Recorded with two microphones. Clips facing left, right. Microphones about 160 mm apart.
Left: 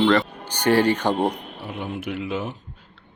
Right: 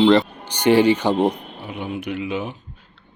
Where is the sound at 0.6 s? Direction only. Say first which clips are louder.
Right 4 dB; 15° right (ahead or behind).